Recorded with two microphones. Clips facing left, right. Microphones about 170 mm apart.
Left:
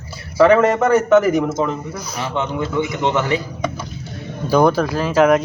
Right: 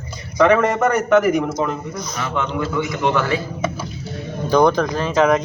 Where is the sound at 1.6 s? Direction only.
5° left (ahead or behind).